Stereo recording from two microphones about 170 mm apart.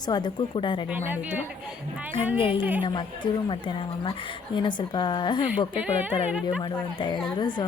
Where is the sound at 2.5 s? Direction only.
10° right (ahead or behind).